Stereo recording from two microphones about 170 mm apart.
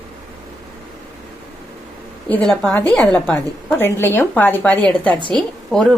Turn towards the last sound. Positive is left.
turn(degrees=5)  # may be behind; listen again after turning